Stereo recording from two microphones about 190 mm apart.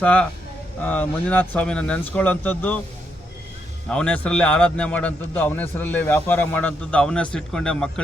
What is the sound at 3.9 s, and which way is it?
A man's voice, 5° left (ahead or behind).